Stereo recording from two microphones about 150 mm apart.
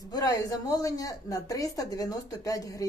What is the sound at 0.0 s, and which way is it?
A woman's voice, 25° left (ahead or behind).